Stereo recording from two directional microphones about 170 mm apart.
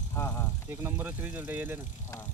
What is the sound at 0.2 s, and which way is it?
Speech, 20° left (ahead or behind).